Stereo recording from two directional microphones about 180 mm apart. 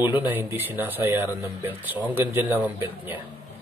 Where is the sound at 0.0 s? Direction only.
10° right (ahead or behind).